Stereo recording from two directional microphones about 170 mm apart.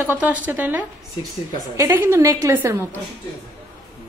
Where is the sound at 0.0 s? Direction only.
10° right (ahead or behind).